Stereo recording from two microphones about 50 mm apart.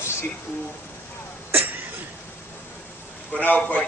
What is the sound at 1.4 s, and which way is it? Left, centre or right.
Cough, right.